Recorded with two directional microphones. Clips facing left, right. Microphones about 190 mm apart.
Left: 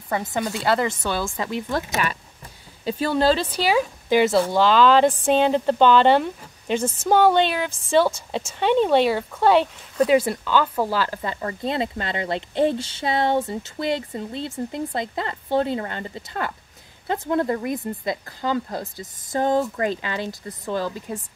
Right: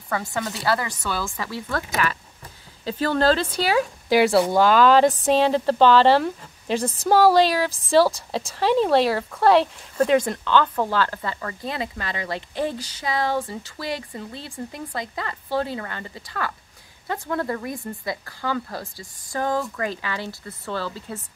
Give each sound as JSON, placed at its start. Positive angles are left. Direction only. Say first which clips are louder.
{"t": 0.1, "sound": "a woman's voice", "louder": "left 2 dB", "side_deg": 20}
{"t": 4.1, "sound": "speech", "louder": "right 1 dB", "side_deg": -5}
{"t": 6.8, "sound": "speech", "louder": "left 1 dB", "side_deg": -35}
{"t": 7.1, "sound": "speech", "louder": "right 1 dB", "side_deg": -5}